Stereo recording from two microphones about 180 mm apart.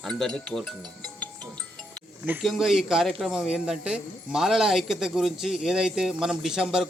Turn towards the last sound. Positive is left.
turn(degrees=-5)  # may be behind; listen again after turning